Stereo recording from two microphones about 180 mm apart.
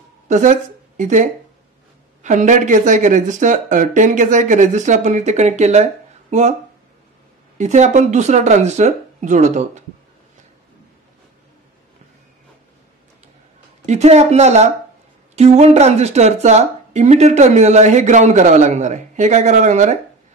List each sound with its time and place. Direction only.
0.3 s speech: 45° right (ahead or behind)
7.5 s speech: 40° right (ahead or behind)
13.8 s speech: 40° right (ahead or behind)